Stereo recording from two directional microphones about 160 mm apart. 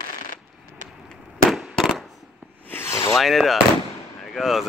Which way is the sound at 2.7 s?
15° left (ahead or behind).